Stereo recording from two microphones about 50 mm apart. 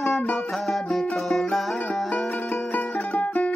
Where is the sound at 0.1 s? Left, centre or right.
Centre.